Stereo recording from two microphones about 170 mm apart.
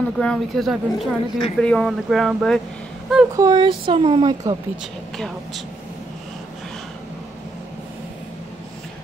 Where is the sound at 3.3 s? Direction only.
25° right (ahead or behind).